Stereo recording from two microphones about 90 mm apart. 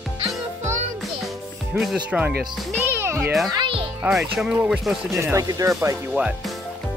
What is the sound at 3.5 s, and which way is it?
Music, 70° right (ahead or behind).